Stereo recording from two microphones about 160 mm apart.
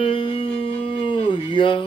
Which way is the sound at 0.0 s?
35° left (ahead or behind).